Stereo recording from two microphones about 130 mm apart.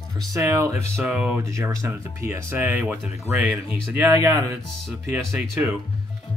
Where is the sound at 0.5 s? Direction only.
25° right (ahead or behind).